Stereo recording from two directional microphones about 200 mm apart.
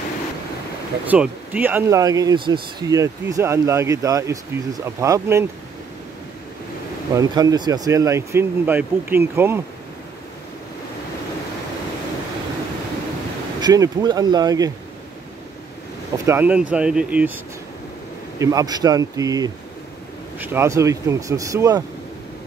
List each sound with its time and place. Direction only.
1.0 s speech: 10° right (ahead or behind)
7.2 s speech: 20° right (ahead or behind)
13.6 s speech: 20° right (ahead or behind)
16.3 s speech: 10° right (ahead or behind)
18.4 s speech: 20° right (ahead or behind)